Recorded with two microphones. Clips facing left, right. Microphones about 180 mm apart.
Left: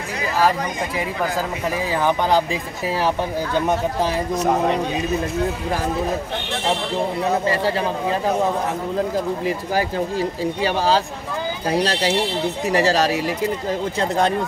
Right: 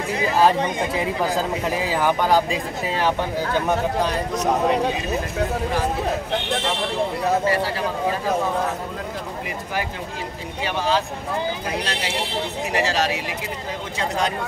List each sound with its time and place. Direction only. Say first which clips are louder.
10.6 s speech: left 2 dB; 35° left (ahead or behind)